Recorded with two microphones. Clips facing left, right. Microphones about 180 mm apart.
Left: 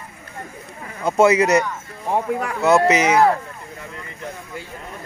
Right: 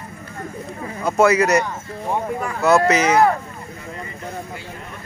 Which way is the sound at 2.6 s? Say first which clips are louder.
Even; 20° left (ahead or behind).